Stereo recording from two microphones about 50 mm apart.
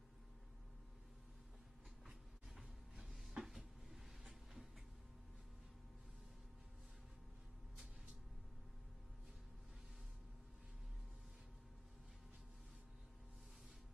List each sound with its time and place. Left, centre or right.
2.0 s cupboard open or close: centre